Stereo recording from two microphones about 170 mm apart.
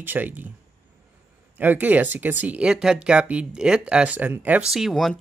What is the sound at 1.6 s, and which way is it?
Speech, 10° right (ahead or behind).